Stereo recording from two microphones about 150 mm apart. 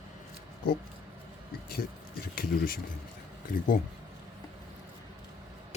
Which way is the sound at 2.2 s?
75° left (ahead or behind).